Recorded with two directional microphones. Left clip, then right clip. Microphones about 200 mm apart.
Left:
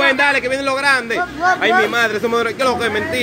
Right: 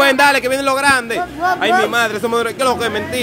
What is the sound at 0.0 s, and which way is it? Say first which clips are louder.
Speech: right 3 dB; 25° right (ahead or behind).